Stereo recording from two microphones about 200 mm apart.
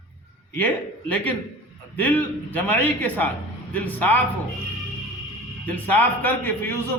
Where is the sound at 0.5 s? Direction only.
10° left (ahead or behind).